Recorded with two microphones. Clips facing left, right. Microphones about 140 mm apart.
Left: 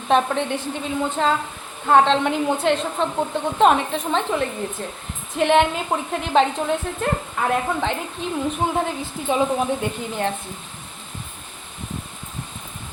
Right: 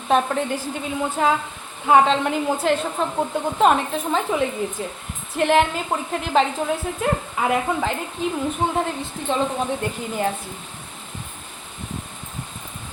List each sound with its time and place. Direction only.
0.1 s a woman's voice: 5° right (ahead or behind)